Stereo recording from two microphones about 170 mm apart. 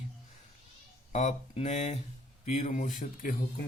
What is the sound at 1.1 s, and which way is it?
Speech, 45° left (ahead or behind).